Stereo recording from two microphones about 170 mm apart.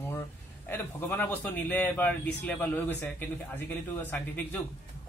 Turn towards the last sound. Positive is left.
turn(degrees=10)  # may be behind; listen again after turning